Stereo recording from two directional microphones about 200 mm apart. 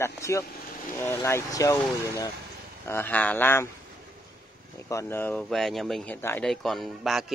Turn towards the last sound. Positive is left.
turn(degrees=0)  # may be behind; listen again after turning